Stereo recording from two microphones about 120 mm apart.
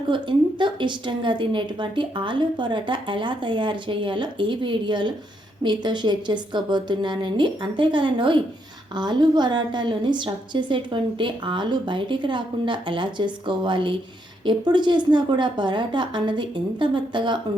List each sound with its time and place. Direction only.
0.1 s a woman's voice: 40° right (ahead or behind)